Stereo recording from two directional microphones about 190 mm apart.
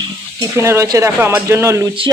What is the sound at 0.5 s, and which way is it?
Speech, 15° right (ahead or behind).